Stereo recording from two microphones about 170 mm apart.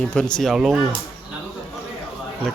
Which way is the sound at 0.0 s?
5° left (ahead or behind).